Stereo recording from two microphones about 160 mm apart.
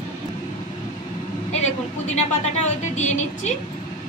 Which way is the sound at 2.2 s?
45° left (ahead or behind).